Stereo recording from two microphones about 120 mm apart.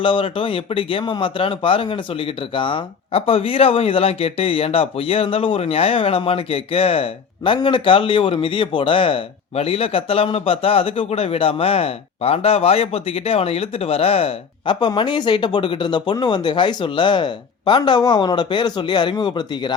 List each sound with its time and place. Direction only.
0.0 s speech: 45° left (ahead or behind)
14.8 s speech: 40° left (ahead or behind)